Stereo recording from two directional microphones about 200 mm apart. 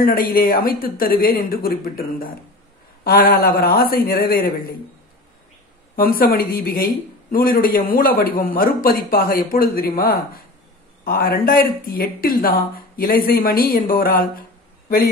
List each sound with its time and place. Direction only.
0.3 s speech: 45° left (ahead or behind)
5.9 s speech: 45° left (ahead or behind)